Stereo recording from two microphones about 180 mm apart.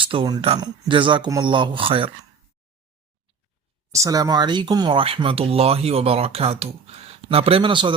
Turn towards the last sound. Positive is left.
turn(degrees=-25)  # may be behind; listen again after turning